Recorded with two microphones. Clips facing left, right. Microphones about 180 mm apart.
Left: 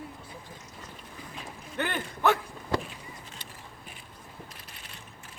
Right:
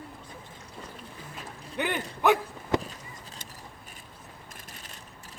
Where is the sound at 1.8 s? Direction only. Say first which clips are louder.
Right 1 dB; 15° right (ahead or behind).